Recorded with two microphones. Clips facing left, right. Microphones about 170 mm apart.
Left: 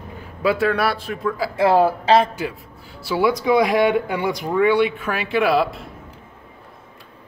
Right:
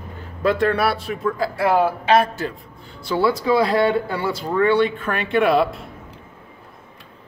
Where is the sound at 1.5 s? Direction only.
25° left (ahead or behind).